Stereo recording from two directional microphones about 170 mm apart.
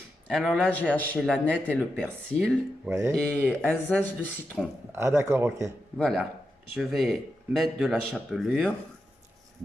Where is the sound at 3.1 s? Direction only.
5° left (ahead or behind).